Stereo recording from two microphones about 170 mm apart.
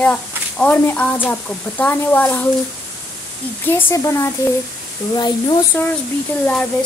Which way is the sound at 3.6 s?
10° left (ahead or behind).